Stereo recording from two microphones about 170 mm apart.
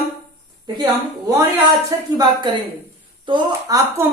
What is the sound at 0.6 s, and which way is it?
A woman's voice, 25° right (ahead or behind).